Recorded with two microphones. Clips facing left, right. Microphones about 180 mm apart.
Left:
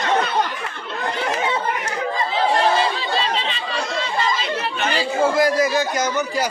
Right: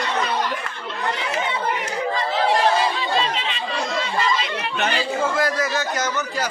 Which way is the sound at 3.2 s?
35° left (ahead or behind).